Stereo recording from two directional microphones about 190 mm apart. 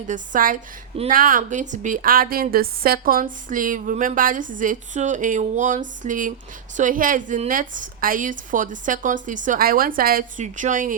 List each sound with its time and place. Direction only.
0.1 s a woman's voice: 45° right (ahead or behind)